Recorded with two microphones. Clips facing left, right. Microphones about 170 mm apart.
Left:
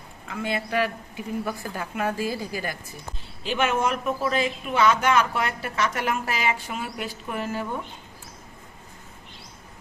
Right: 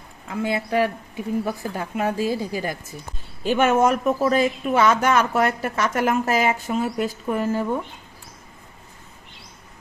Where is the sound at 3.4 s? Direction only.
45° right (ahead or behind).